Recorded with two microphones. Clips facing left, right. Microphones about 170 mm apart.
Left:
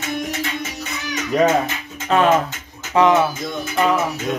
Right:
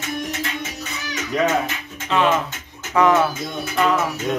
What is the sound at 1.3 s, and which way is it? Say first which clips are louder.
Speech: left 4 dB; 40° left (ahead or behind).